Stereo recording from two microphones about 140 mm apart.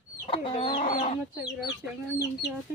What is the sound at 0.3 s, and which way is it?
Chicken, 40° left (ahead or behind).